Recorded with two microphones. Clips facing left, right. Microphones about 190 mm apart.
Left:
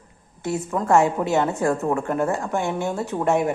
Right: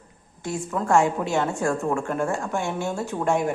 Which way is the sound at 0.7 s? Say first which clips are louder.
Left 2 dB; 20° left (ahead or behind).